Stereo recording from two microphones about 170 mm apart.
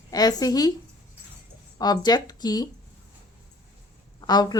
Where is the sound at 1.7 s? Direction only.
25° left (ahead or behind).